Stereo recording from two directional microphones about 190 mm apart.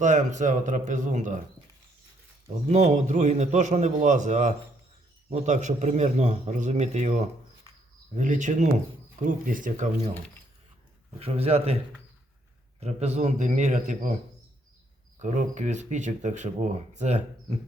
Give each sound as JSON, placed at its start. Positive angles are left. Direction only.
{"t": 0.0, "sound": "speech", "side_deg": -40}
{"t": 2.6, "sound": "speech", "side_deg": -35}
{"t": 11.2, "sound": "speech", "side_deg": -30}
{"t": 12.8, "sound": "speech", "side_deg": -35}
{"t": 15.2, "sound": "speech", "side_deg": -40}